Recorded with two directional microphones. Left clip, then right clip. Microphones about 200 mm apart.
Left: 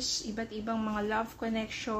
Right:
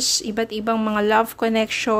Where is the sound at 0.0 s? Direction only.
55° right (ahead or behind).